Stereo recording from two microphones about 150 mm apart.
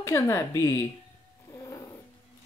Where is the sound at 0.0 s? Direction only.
20° left (ahead or behind).